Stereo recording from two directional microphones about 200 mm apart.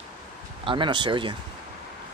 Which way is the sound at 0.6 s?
25° right (ahead or behind).